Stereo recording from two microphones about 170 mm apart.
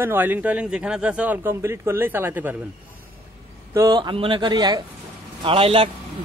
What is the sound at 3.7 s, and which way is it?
Speech, 20° right (ahead or behind).